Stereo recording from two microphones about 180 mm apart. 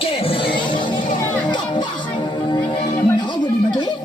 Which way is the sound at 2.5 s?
25° left (ahead or behind).